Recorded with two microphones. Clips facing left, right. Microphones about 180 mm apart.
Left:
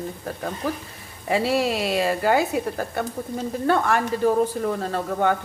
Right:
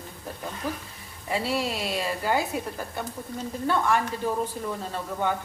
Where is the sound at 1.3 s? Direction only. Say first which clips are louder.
Left 6 dB; 75° left (ahead or behind).